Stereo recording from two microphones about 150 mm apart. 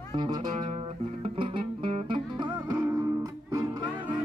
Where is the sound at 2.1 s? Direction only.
30° right (ahead or behind).